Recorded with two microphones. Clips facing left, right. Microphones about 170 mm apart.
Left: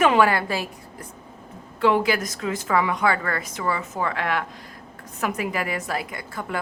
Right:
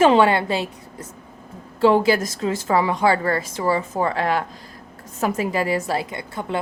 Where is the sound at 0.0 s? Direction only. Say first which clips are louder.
Right 4 dB; 25° right (ahead or behind).